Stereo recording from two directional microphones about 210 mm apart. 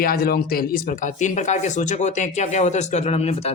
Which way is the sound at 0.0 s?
45° left (ahead or behind).